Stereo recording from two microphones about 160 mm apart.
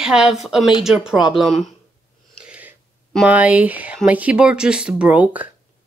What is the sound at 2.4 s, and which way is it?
Gasp, 10° right (ahead or behind).